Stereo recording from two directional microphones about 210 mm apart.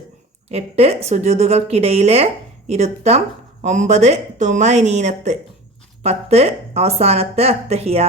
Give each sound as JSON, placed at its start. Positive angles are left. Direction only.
{"t": 0.4, "sound": "a woman's voice", "side_deg": -30}